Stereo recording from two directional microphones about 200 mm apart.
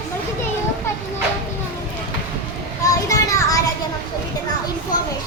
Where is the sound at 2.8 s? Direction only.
15° left (ahead or behind).